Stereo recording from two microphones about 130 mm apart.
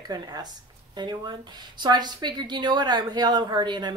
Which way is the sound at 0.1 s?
30° right (ahead or behind).